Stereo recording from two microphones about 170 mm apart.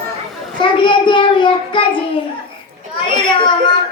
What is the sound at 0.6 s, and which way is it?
Child singing, 30° left (ahead or behind).